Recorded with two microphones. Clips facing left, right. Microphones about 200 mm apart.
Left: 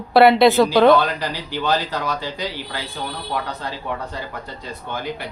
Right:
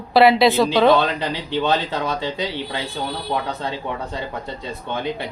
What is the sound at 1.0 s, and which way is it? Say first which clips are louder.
Speech: right 1 dB; 25° right (ahead or behind).